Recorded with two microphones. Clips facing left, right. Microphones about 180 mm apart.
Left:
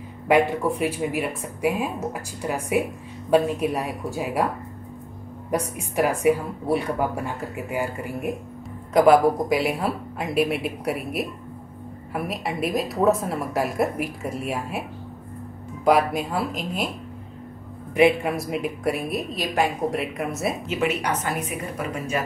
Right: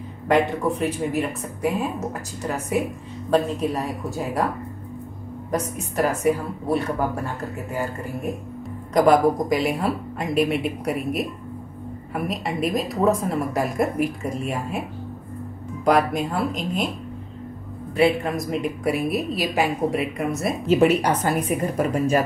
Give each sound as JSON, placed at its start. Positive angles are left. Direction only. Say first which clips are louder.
{"t": 0.3, "sound": "speech", "louder": "even", "side_deg": 10}
{"t": 5.5, "sound": "a woman's voice", "louder": "even", "side_deg": 10}
{"t": 15.8, "sound": "a woman's voice", "louder": "even", "side_deg": 5}
{"t": 17.9, "sound": "a woman's voice", "louder": "left 1 dB", "side_deg": 15}
{"t": 20.6, "sound": "a woman's voice", "louder": "right 11 dB", "side_deg": -35}